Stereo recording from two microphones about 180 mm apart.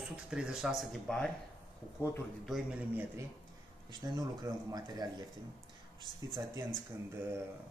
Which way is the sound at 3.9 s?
20° right (ahead or behind).